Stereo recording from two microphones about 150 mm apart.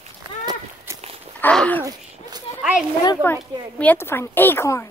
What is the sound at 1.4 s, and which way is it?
Speech, 10° left (ahead or behind).